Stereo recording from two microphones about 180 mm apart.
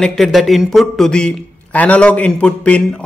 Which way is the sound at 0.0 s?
Centre (ahead or behind).